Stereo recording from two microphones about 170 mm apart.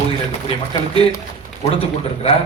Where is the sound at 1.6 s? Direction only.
35° left (ahead or behind).